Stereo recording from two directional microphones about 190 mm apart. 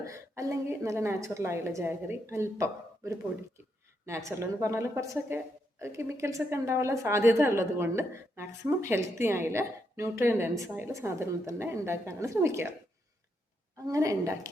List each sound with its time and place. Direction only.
0.0 s a woman's voice: 15° right (ahead or behind)
13.8 s a woman's voice: 15° right (ahead or behind)